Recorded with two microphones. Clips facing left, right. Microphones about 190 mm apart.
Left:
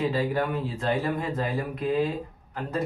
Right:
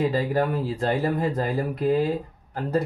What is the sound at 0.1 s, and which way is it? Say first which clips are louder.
Speech: right 3 dB; 40° right (ahead or behind).